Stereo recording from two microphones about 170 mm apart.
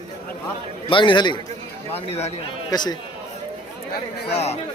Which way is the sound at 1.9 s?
35° left (ahead or behind).